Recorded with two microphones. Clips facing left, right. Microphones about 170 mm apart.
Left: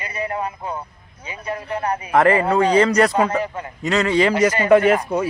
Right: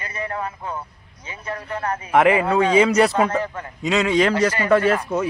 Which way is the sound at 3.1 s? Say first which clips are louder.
Left 1 dB; 15° left (ahead or behind).